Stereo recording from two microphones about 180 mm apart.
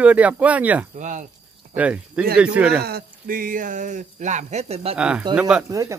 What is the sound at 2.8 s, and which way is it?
Speech, 55° right (ahead or behind).